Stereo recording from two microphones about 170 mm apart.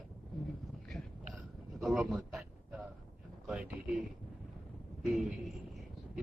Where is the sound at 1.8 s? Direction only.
Centre (ahead or behind).